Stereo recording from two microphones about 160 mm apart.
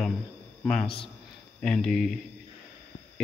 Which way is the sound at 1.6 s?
5° left (ahead or behind).